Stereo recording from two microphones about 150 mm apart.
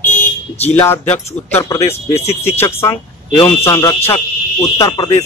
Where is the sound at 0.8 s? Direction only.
15° left (ahead or behind).